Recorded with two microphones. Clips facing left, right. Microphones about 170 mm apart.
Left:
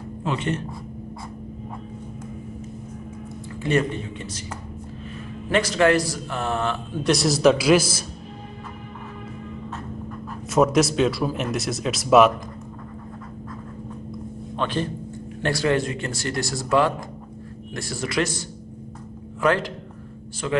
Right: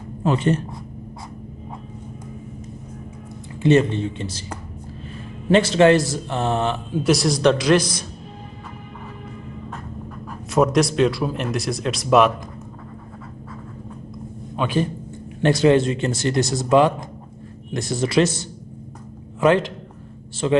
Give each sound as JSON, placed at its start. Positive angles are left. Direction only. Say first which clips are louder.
{"t": 0.2, "sound": "speech", "louder": "right 6 dB", "side_deg": -40}
{"t": 3.6, "sound": "a man's voice", "louder": "right 6 dB", "side_deg": -25}
{"t": 5.5, "sound": "a man's voice", "louder": "right 5 dB", "side_deg": -25}
{"t": 7.0, "sound": "speech", "louder": "right 1 dB", "side_deg": 0}
{"t": 10.5, "sound": "speech", "louder": "right 1 dB", "side_deg": 0}
{"t": 14.6, "sound": "a man's voice", "louder": "right 4 dB", "side_deg": -10}
{"t": 15.4, "sound": "a man's voice", "louder": "right 7 dB", "side_deg": -20}